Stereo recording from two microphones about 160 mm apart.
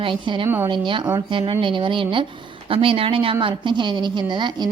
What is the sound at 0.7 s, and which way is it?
Speech, 30° right (ahead or behind).